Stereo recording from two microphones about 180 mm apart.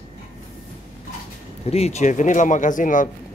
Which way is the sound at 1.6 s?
35° left (ahead or behind).